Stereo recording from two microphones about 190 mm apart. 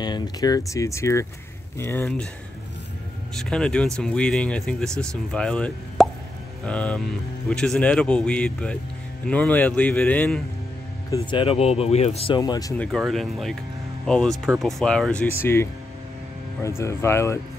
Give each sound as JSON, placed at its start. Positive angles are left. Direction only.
{"t": 0.0, "sound": "speech", "side_deg": 20}
{"t": 3.3, "sound": "speech", "side_deg": 5}
{"t": 11.1, "sound": "speech", "side_deg": 25}
{"t": 12.4, "sound": "speech", "side_deg": 20}
{"t": 12.7, "sound": "speech", "side_deg": 5}